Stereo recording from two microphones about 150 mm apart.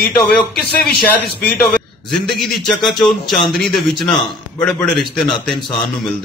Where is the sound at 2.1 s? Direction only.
Centre (ahead or behind).